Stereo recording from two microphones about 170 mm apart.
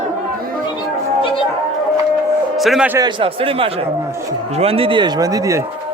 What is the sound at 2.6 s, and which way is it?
Speech, centre (ahead or behind).